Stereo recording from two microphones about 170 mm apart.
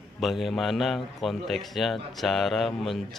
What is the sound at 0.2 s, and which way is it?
A man's voice, centre (ahead or behind).